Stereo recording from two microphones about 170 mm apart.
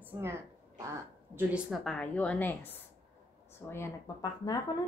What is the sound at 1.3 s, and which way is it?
A woman's voice, 5° right (ahead or behind).